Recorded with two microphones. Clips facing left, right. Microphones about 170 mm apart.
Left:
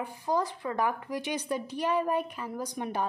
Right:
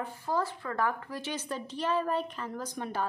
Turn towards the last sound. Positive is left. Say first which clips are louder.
# left 2 dB
turn(degrees=15)  # may be behind; listen again after turning